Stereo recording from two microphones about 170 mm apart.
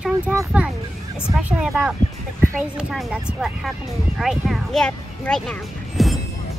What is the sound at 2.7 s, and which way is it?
Speech, 5° right (ahead or behind).